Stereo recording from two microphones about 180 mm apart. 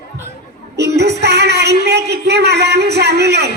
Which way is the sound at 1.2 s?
65° right (ahead or behind).